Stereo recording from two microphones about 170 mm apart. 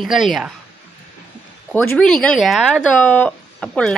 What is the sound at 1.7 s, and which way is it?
Speech, 5° left (ahead or behind).